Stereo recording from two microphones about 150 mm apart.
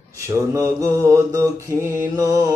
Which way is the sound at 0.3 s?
20° right (ahead or behind).